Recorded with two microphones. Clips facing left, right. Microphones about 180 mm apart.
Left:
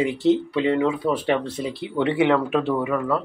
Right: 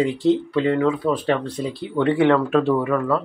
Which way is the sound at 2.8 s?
5° left (ahead or behind).